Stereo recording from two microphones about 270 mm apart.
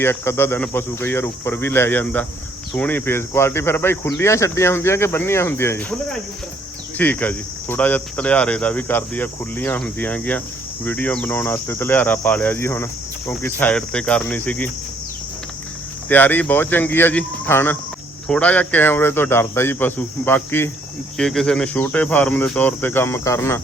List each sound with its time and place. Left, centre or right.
0.0 s cricket: centre
16.0 s cricket: centre